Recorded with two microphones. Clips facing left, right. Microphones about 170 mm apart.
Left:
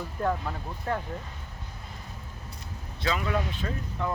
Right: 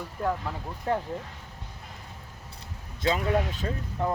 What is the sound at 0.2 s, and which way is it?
Speech, 5° right (ahead or behind).